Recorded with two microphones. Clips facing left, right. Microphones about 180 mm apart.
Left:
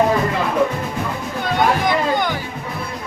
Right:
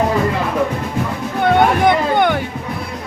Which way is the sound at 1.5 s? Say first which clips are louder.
Right 5 dB; 60° right (ahead or behind).